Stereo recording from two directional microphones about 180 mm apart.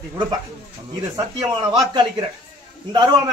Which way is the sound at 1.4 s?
25° right (ahead or behind).